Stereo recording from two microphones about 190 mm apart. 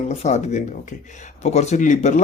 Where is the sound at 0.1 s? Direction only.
35° left (ahead or behind).